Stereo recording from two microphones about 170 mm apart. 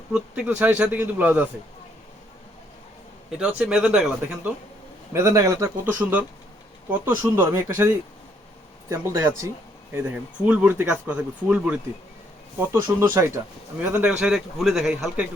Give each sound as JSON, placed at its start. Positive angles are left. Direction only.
{"t": 0.1, "sound": "a man's voice", "side_deg": -5}
{"t": 3.2, "sound": "speech", "side_deg": -5}
{"t": 5.1, "sound": "a man's voice", "side_deg": -20}